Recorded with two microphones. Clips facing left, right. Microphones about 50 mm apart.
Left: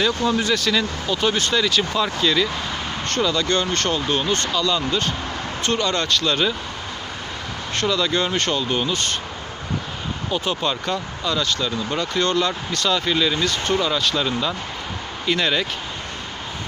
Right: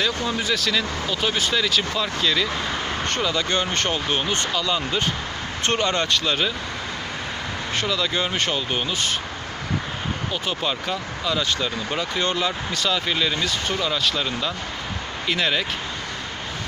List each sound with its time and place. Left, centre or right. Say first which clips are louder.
0.0 s speech: left 4 dB; centre
3.1 s speech: left 4 dB; centre
5.6 s speech: even; right; by 6.5 s centre
7.8 s speech: left 4 dB; centre
10.3 s speech: left 5 dB; centre
11.4 s speech: left 1 dB; centre